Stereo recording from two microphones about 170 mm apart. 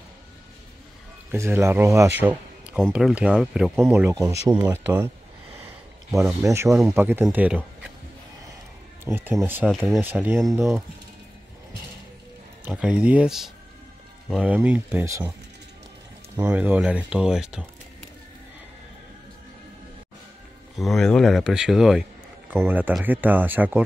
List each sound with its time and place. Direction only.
1.3 s speech: 15° right (ahead or behind)
2.8 s speech: centre (ahead or behind)
6.4 s speech: 15° right (ahead or behind)
9.0 s speech: 10° right (ahead or behind)
9.7 s speech: centre (ahead or behind)
12.6 s speech: 5° right (ahead or behind)
16.3 s speech: 10° right (ahead or behind)
20.7 s speech: centre (ahead or behind)